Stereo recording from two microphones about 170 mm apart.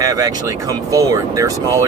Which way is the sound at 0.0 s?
20° right (ahead or behind).